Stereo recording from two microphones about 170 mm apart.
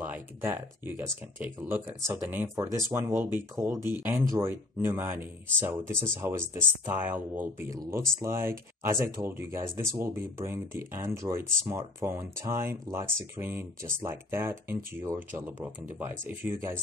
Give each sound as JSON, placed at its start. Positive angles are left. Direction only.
{"t": 0.0, "sound": "speech", "side_deg": -10}